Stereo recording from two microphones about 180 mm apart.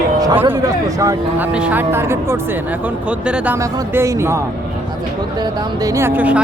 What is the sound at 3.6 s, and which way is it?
Speech, 15° right (ahead or behind).